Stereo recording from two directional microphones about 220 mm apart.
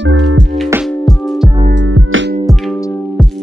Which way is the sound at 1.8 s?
65° right (ahead or behind).